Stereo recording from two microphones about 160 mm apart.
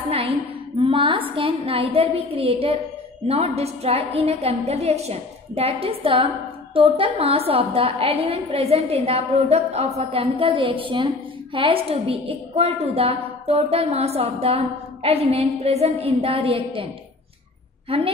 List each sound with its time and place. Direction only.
0.7 s a woman's voice: 35° right (ahead or behind)
17.8 s a woman's voice: 35° right (ahead or behind)